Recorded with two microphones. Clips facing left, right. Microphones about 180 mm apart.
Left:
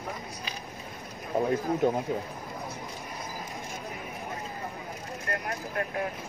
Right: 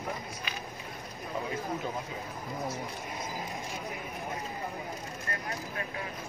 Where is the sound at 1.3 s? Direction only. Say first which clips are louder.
Left 9 dB; 45° left (ahead or behind).